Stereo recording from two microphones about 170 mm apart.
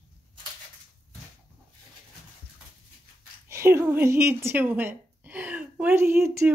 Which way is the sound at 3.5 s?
15° right (ahead or behind).